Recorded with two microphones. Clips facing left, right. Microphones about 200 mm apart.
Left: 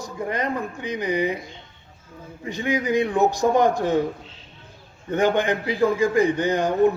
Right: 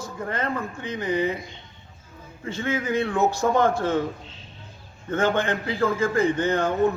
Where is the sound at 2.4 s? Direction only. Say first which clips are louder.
Left 3 dB; 15° left (ahead or behind).